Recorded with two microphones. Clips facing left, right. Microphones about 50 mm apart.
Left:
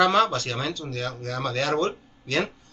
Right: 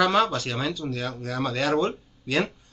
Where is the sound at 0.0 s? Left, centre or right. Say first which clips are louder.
Left 1 dB; centre.